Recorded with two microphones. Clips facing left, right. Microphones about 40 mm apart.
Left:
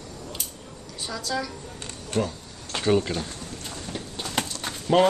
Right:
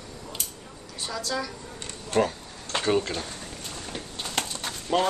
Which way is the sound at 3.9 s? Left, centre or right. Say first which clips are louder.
Left 2 dB; centre.